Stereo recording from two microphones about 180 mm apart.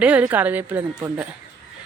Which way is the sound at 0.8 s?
20° right (ahead or behind).